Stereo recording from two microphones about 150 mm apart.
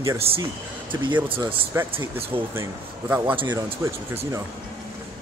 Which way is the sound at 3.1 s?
10° right (ahead or behind).